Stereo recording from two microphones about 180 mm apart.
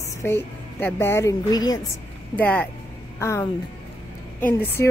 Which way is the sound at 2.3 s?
10° left (ahead or behind).